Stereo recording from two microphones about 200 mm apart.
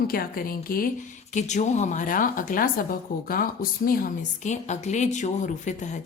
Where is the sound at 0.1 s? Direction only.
45° left (ahead or behind).